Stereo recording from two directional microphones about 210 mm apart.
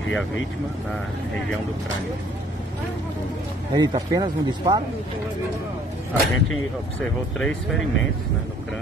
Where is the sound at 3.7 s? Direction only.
20° right (ahead or behind).